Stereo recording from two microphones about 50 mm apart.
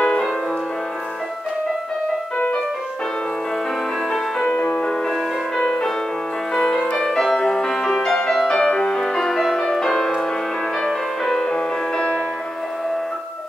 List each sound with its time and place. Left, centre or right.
0.0 s music: centre
4.6 s music: centre